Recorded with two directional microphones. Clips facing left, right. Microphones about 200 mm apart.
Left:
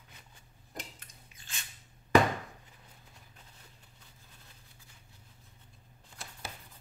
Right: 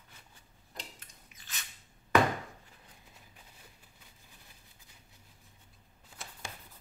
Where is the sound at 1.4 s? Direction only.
30° left (ahead or behind).